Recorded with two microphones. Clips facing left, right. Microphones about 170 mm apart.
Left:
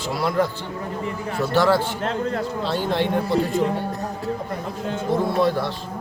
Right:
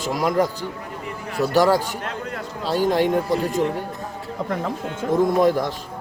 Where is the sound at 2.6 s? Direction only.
40° right (ahead or behind).